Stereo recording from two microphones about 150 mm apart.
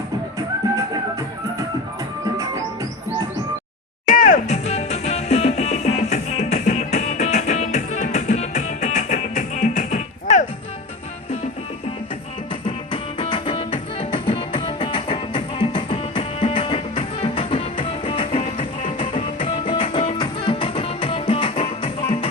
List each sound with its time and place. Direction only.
4.0 s music: 60° left (ahead or behind)
12.6 s music: 35° left (ahead or behind)